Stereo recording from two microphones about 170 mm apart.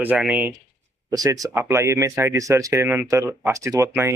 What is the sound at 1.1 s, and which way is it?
Speech, 20° right (ahead or behind).